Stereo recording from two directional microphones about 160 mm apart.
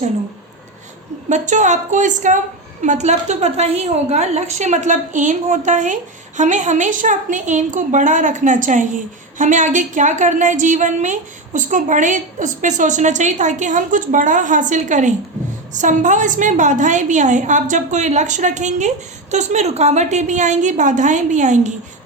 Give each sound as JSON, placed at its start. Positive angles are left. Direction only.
{"t": 1.3, "sound": "a woman's voice", "side_deg": -50}